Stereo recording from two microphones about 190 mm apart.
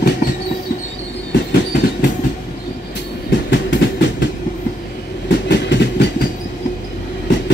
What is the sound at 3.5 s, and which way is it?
Train, 70° left (ahead or behind).